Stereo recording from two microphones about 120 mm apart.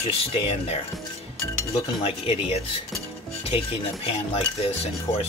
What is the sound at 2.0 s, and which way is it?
Speech, 60° left (ahead or behind).